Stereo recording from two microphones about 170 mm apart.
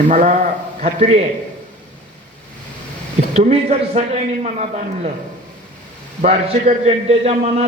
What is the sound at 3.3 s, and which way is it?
A man's voice, 40° right (ahead or behind).